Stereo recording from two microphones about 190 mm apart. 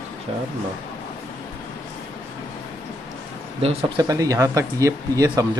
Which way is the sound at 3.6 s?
20° right (ahead or behind).